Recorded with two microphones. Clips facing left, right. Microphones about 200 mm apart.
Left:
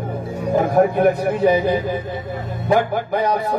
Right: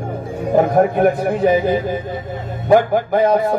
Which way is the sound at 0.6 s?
45° right (ahead or behind).